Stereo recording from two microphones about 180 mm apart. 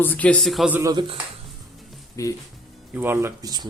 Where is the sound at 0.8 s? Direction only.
25° right (ahead or behind).